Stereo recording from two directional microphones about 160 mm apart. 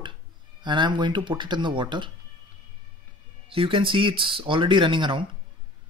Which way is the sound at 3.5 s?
35° right (ahead or behind).